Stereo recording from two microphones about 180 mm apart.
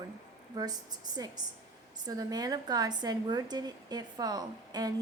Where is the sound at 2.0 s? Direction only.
20° right (ahead or behind).